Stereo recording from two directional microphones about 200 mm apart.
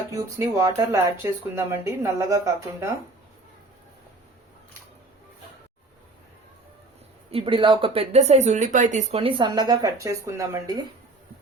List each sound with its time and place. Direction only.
0.1 s speech: 15° right (ahead or behind)
7.3 s speech: 30° right (ahead or behind)